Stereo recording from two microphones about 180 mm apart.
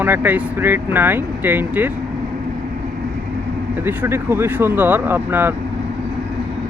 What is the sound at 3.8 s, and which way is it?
Speech, 10° right (ahead or behind).